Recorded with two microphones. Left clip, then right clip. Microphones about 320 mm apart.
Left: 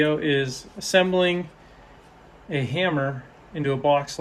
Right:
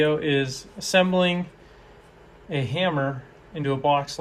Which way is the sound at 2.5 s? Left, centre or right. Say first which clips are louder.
Left 1 dB; centre.